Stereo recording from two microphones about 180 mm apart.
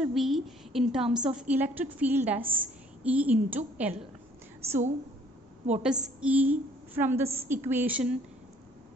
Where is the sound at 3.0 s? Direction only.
10° right (ahead or behind).